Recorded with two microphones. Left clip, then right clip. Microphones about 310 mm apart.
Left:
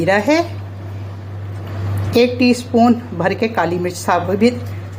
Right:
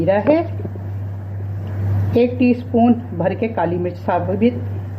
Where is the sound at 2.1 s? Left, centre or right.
Left.